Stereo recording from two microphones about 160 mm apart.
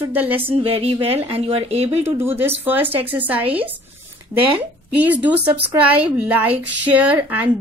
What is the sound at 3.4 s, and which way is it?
Speech, 35° right (ahead or behind).